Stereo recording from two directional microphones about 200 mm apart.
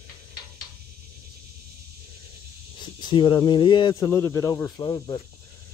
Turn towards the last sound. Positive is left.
turn(degrees=20)  # may be behind; listen again after turning